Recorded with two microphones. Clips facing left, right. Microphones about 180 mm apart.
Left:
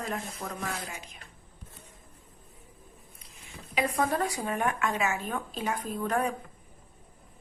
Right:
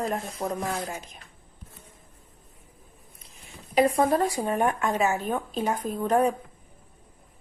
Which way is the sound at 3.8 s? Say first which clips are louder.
Right 7 dB; 35° right (ahead or behind).